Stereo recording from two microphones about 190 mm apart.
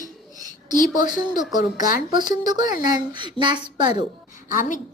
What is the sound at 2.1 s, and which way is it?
A woman's voice, 20° right (ahead or behind).